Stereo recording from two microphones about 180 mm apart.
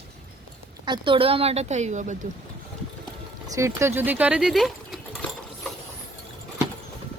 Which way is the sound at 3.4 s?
15° right (ahead or behind).